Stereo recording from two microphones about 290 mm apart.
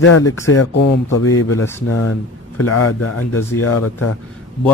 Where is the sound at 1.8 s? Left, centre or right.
Left.